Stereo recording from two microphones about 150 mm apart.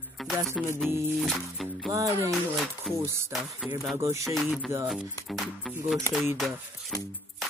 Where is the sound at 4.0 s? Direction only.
20° right (ahead or behind).